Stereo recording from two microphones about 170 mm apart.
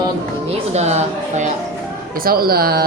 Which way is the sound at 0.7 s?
40° right (ahead or behind).